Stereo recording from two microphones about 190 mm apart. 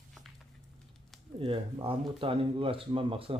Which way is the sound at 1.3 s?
30° right (ahead or behind).